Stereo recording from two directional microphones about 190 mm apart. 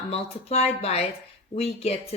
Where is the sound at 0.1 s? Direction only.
35° left (ahead or behind).